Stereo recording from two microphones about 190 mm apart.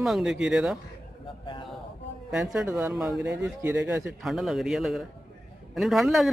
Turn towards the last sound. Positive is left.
turn(degrees=0)  # may be behind; listen again after turning